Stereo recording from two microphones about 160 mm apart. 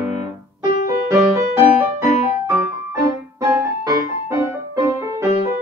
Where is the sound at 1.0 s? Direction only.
15° right (ahead or behind).